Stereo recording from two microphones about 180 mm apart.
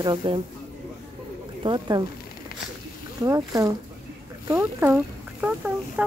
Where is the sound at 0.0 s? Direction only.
25° right (ahead or behind).